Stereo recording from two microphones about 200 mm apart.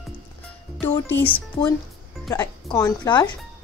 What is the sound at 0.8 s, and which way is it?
A woman's voice, 10° left (ahead or behind).